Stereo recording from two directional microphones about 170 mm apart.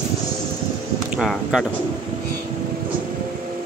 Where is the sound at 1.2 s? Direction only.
5° right (ahead or behind).